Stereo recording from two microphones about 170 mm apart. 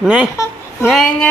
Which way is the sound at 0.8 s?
Centre (ahead or behind).